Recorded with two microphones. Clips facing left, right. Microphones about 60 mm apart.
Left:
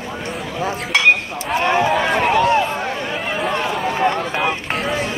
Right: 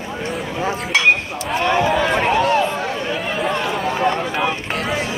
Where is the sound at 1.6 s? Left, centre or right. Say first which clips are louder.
Even; left.